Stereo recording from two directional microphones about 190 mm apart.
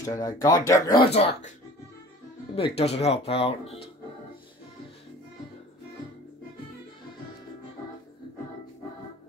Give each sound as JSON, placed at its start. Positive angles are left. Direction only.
{"t": 0.0, "sound": "speech", "side_deg": 20}
{"t": 1.1, "sound": "speech", "side_deg": 35}
{"t": 2.5, "sound": "speech", "side_deg": 30}